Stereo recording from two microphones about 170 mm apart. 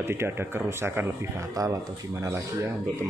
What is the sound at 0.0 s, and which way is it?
Speech, 15° right (ahead or behind).